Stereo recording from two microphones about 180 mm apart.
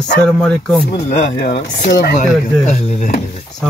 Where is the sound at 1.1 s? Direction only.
65° left (ahead or behind).